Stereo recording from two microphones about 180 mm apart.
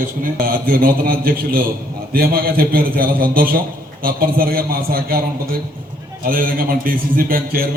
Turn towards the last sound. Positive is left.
turn(degrees=-55)  # may be behind; listen again after turning